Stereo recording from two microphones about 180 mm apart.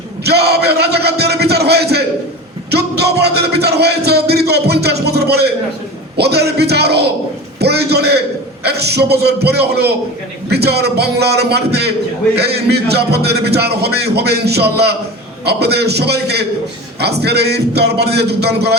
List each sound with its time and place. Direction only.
0.3 s music: 65° right (ahead or behind)